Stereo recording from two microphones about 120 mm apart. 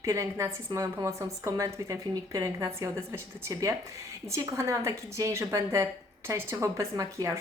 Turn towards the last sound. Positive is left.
turn(degrees=-25)  # may be behind; listen again after turning